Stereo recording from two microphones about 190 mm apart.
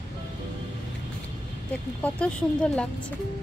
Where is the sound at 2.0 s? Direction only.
5° left (ahead or behind).